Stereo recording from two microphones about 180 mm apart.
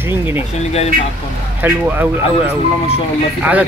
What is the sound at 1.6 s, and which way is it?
Speech, 10° right (ahead or behind).